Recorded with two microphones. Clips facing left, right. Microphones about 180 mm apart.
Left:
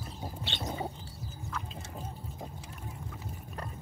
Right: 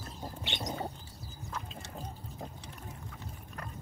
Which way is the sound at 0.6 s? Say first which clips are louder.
Left 1 dB; 5° left (ahead or behind).